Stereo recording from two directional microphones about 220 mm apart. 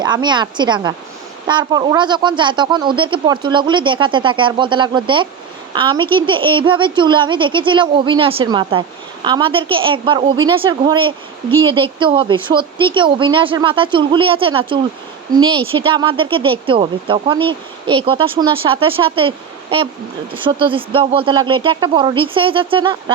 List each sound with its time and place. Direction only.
0.0 s speech: 20° right (ahead or behind)
20.3 s speech: 25° right (ahead or behind)